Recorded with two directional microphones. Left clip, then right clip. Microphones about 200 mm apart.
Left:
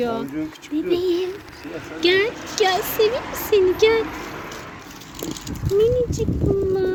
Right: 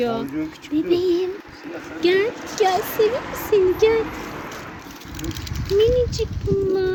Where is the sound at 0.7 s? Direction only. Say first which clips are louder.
Right 2 dB; centre (ahead or behind).